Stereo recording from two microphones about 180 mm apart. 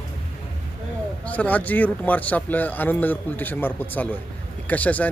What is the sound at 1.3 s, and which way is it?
Speech, 10° left (ahead or behind).